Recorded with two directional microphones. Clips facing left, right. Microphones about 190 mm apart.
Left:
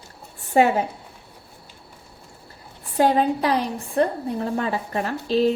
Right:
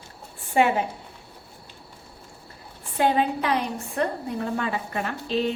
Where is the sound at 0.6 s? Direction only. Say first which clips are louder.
Left 3 dB; 40° left (ahead or behind).